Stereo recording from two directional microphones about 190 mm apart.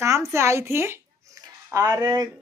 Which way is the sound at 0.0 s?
15° right (ahead or behind).